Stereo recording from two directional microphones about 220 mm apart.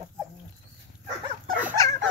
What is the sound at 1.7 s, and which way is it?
Dog, 15° left (ahead or behind).